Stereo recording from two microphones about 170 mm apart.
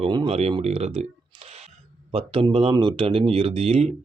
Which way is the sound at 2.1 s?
30° right (ahead or behind).